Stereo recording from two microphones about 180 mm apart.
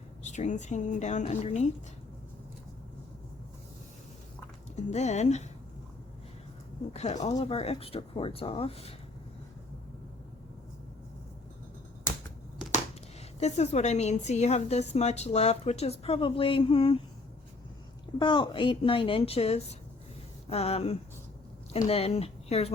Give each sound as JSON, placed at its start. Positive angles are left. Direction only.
{"t": 0.2, "sound": "a woman's voice", "side_deg": 40}
{"t": 4.7, "sound": "a woman's voice", "side_deg": 40}
{"t": 6.9, "sound": "a woman's voice", "side_deg": 40}
{"t": 13.4, "sound": "a woman's voice", "side_deg": 40}
{"t": 18.2, "sound": "a woman's voice", "side_deg": 25}